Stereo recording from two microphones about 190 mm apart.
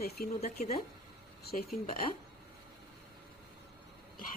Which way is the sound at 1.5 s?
55° left (ahead or behind).